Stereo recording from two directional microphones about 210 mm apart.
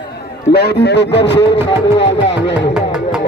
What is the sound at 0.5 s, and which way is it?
A man's voice, 50° left (ahead or behind).